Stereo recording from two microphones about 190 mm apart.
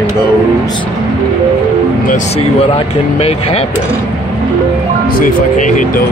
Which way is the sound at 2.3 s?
30° left (ahead or behind).